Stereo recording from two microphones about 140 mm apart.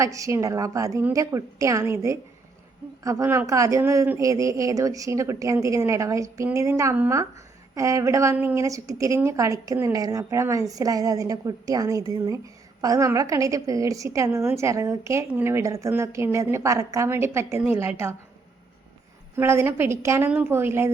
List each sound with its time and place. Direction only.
0.0 s a woman's voice: 20° right (ahead or behind)
19.4 s a woman's voice: 20° right (ahead or behind)